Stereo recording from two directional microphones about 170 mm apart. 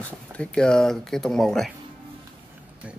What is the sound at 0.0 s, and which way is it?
Speech, 5° left (ahead or behind).